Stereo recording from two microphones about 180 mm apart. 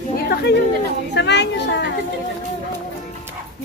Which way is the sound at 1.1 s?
75° left (ahead or behind).